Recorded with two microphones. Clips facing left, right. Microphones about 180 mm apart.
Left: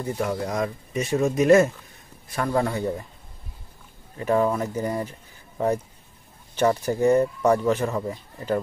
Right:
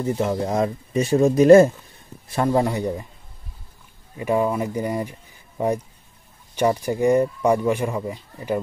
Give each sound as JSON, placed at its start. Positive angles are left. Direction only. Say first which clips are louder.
{"t": 0.0, "sound": "speech", "louder": "right 4 dB", "side_deg": -25}
{"t": 4.2, "sound": "speech", "louder": "right 1 dB", "side_deg": -10}
{"t": 6.5, "sound": "speech", "louder": "right 1 dB", "side_deg": -15}